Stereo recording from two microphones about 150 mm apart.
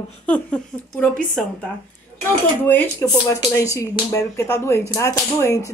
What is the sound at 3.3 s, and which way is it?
Speech, 20° left (ahead or behind).